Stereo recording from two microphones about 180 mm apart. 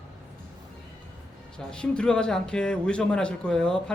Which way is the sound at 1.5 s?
5° left (ahead or behind).